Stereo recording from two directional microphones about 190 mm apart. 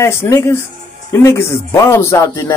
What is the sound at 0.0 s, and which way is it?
Speech, 15° left (ahead or behind).